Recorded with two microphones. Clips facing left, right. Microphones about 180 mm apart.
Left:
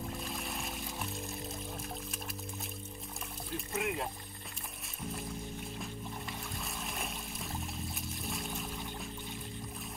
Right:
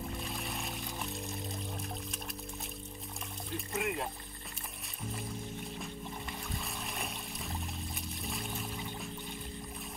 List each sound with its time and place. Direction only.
0.0 s music: centre (ahead or behind)
3.5 s speech: centre (ahead or behind)
6.5 s water: centre (ahead or behind)